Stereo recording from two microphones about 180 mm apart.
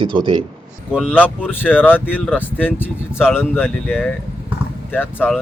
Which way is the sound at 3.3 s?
10° left (ahead or behind).